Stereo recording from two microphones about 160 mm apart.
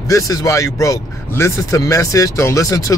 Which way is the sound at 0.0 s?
20° left (ahead or behind).